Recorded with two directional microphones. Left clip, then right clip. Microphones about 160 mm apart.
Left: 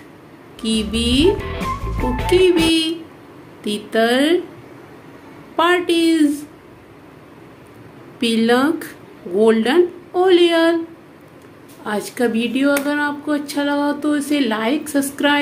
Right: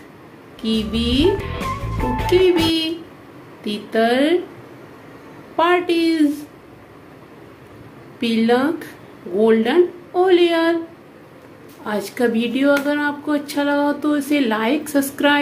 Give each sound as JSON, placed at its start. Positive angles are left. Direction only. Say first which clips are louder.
{"t": 0.6, "sound": "a woman's voice", "louder": "left 1 dB", "side_deg": 20}
{"t": 1.5, "sound": "music", "louder": "left 1 dB", "side_deg": 0}
{"t": 2.2, "sound": "a woman's voice", "louder": "left 1 dB", "side_deg": 15}
{"t": 5.6, "sound": "a woman's voice", "louder": "left 1 dB", "side_deg": 20}
{"t": 8.2, "sound": "a woman's voice", "louder": "left 1 dB", "side_deg": 25}
{"t": 11.8, "sound": "speech", "louder": "even", "side_deg": 10}